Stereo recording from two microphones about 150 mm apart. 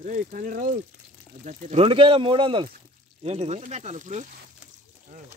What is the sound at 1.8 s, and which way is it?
Speech, 35° right (ahead or behind).